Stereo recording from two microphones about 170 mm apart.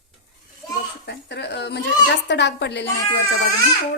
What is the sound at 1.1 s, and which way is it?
Speech, 80° left.